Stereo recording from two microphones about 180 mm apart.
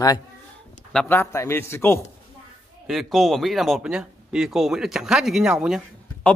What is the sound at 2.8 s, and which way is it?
Speech, centre (ahead or behind).